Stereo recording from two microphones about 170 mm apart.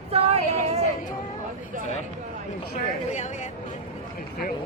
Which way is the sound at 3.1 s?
45° left (ahead or behind).